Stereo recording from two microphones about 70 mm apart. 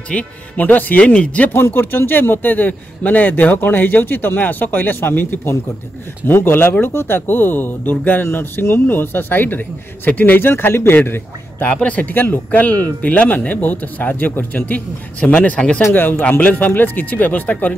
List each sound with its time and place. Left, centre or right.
0.1 s speech: left
1.5 s a man's voice: left
11.7 s speech: centre